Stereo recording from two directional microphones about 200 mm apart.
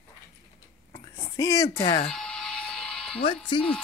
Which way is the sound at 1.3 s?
15° left (ahead or behind).